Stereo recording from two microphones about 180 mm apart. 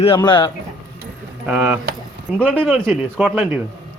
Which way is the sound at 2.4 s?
5° left (ahead or behind).